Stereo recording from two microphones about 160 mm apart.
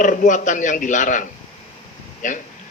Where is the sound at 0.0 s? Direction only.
55° left (ahead or behind).